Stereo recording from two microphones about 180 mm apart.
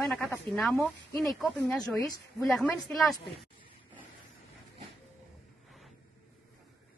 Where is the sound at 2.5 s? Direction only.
Centre (ahead or behind).